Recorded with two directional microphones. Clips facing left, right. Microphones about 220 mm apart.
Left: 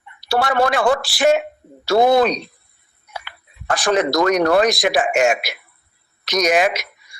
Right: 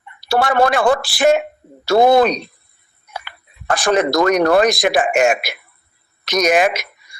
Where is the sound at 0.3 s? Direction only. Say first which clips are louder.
Right 2 dB; 50° right (ahead or behind).